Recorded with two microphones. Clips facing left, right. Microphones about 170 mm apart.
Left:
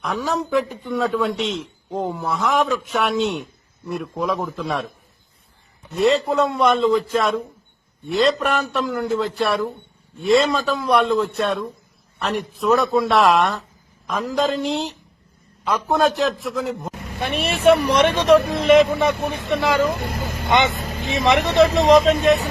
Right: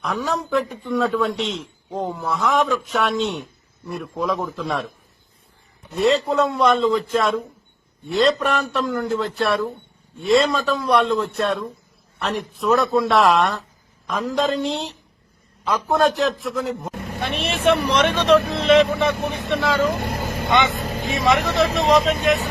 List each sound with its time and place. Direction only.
0.0 s a man's voice: centre (ahead or behind)
6.0 s a man's voice: centre (ahead or behind)
17.2 s speech: 10° left (ahead or behind)
19.2 s speech: 55° left (ahead or behind)
19.6 s speech: 15° left (ahead or behind)
19.9 s speech: 55° right (ahead or behind)
20.7 s vehicle: 50° right (ahead or behind)
21.2 s speech: 25° left (ahead or behind)
21.8 s speech: 40° left (ahead or behind)